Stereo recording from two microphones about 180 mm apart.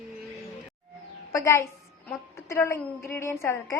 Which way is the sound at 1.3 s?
15° left (ahead or behind).